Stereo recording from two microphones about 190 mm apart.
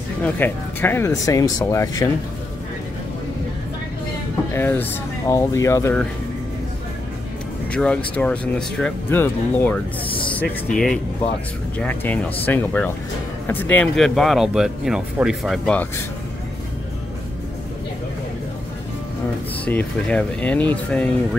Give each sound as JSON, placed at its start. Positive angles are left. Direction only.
{"t": 0.2, "sound": "speech", "side_deg": 10}
{"t": 4.5, "sound": "speech", "side_deg": 10}
{"t": 7.7, "sound": "speech", "side_deg": 5}
{"t": 10.0, "sound": "speech", "side_deg": 25}
{"t": 10.7, "sound": "speech", "side_deg": 5}
{"t": 19.6, "sound": "speech", "side_deg": 10}